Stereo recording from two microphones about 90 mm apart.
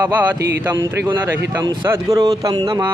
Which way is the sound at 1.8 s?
35° right (ahead or behind).